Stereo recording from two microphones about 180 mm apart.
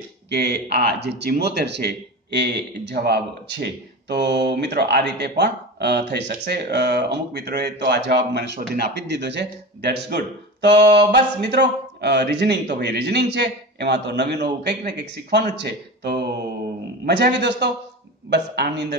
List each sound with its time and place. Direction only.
0.3 s speech: 70° right (ahead or behind)